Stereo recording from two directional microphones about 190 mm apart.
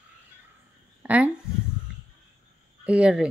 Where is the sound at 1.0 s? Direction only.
5° right (ahead or behind).